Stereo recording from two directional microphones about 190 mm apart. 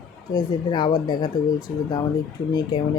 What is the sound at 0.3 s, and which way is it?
Speech, 20° left (ahead or behind).